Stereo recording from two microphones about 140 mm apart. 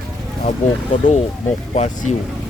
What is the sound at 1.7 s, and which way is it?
Speech, 60° left (ahead or behind).